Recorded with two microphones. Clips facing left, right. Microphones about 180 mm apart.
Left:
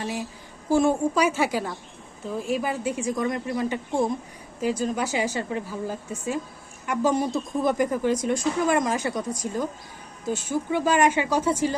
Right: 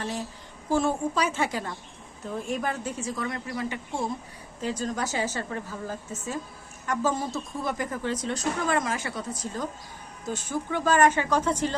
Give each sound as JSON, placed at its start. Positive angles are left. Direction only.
{"t": 0.0, "sound": "speech", "side_deg": 10}